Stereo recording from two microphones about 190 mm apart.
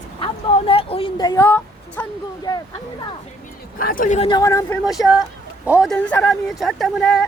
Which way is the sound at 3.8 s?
45° left (ahead or behind).